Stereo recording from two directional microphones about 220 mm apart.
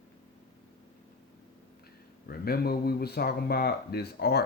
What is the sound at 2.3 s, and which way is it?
Speech, 45° left (ahead or behind).